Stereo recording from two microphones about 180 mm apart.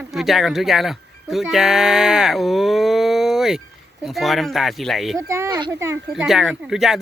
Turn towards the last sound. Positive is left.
turn(degrees=0)  # may be behind; listen again after turning